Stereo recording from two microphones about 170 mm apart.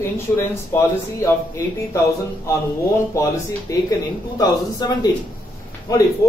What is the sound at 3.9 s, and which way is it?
A man's voice, 20° left (ahead or behind).